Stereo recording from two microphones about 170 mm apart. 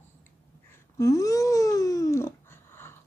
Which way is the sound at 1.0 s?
20° left (ahead or behind).